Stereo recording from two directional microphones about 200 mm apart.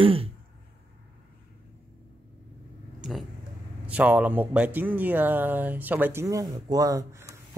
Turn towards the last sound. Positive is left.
turn(degrees=-15)  # may be behind; listen again after turning